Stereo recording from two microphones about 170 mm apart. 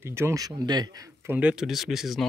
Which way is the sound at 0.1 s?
15° right (ahead or behind).